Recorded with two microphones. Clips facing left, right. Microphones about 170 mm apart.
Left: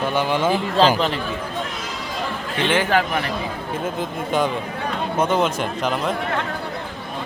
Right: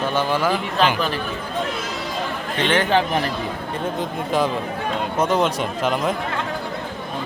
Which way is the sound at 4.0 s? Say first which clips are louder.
Right 1 dB; centre (ahead or behind).